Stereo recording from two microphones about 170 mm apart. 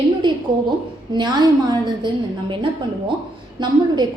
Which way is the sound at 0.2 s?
30° right (ahead or behind).